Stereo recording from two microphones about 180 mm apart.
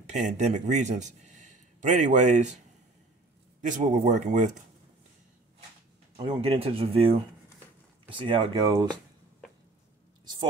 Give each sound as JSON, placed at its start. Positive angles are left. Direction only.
{"t": 0.0, "sound": "speech", "side_deg": -40}
{"t": 3.6, "sound": "speech", "side_deg": -45}
{"t": 6.1, "sound": "speech", "side_deg": -30}